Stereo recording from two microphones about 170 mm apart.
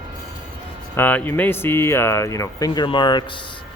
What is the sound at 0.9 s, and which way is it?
Speech, 10° left (ahead or behind).